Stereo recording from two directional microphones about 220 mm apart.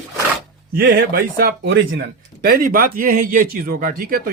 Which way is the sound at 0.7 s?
45° right (ahead or behind).